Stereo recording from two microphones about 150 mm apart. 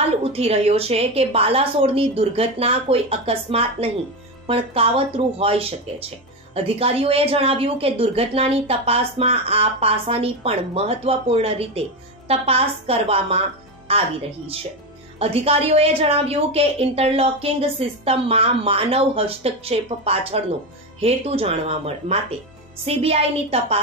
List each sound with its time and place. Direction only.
0.2 s speech: 40° right (ahead or behind)
15.1 s speech: 40° right (ahead or behind)